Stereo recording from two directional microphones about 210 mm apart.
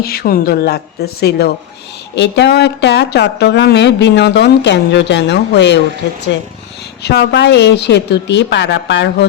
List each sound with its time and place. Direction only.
0.0 s speech: 45° left (ahead or behind)
7.0 s speech: 50° left (ahead or behind)